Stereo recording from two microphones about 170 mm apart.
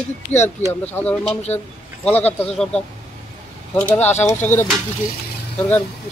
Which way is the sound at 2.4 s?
5° left (ahead or behind).